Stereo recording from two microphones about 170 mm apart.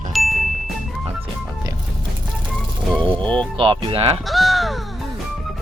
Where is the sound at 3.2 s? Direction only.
5° left (ahead or behind).